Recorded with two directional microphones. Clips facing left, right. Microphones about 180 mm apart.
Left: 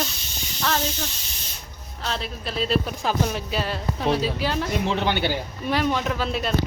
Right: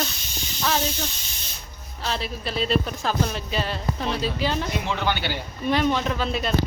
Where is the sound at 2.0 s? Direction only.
Centre (ahead or behind).